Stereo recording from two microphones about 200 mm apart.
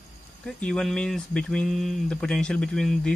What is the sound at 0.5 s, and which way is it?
Speech, 5° left (ahead or behind).